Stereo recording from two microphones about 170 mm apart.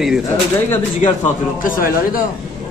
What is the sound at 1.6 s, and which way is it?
Speech, 55° left (ahead or behind).